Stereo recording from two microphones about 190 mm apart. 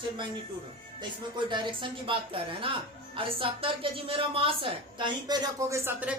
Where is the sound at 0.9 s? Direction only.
25° right (ahead or behind).